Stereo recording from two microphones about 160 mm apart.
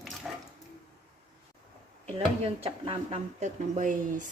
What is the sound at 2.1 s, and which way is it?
Speech, 35° right (ahead or behind).